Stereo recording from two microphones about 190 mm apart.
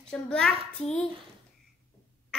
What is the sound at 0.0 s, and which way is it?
A woman's voice, 5° left (ahead or behind).